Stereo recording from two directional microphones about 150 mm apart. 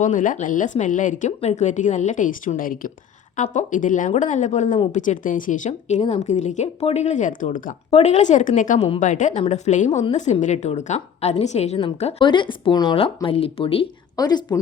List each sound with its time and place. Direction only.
0.0 s speech: 60° left (ahead or behind)
3.3 s speech: 55° left (ahead or behind)
7.9 s speech: 40° left (ahead or behind)
12.2 s speech: 30° left (ahead or behind)
14.2 s speech: 25° left (ahead or behind)